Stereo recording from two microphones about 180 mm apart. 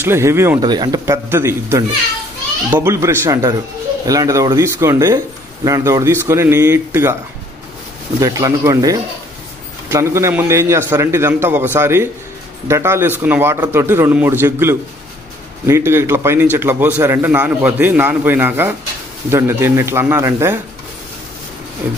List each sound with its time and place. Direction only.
0.0 s a man's voice: 15° right (ahead or behind)
8.2 s a man's voice: 20° right (ahead or behind)
21.8 s a man's voice: 10° right (ahead or behind)